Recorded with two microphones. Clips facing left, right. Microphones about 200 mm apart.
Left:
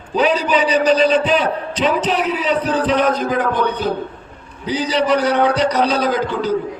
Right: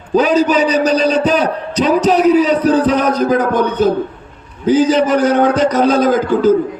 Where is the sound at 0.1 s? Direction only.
45° right (ahead or behind).